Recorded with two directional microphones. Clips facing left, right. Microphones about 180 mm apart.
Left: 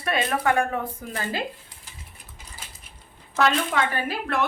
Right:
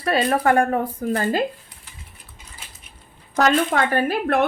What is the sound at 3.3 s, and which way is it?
Speech, 45° right (ahead or behind).